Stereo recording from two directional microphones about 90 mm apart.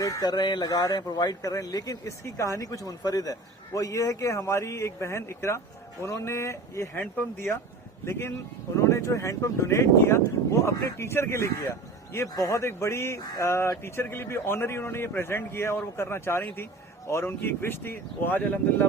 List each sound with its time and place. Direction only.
0.0 s speech: 45° left (ahead or behind)
8.7 s speech: 35° left (ahead or behind)